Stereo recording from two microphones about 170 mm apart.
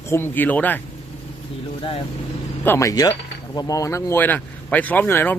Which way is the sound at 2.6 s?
15° left (ahead or behind).